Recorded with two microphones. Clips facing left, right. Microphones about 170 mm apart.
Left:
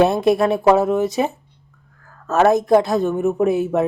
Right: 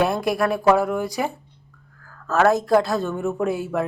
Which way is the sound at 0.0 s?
25° left (ahead or behind).